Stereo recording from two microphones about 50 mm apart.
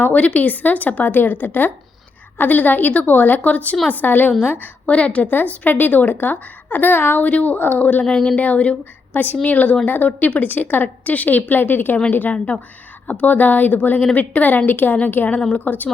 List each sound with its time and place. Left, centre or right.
0.0 s a woman's voice: left
5.3 s a woman's voice: left
8.0 s a woman's voice: left
15.4 s a woman's voice: left
15.6 s a woman's voice: left